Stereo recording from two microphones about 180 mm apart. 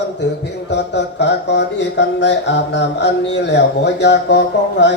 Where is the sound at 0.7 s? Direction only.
75° left (ahead or behind).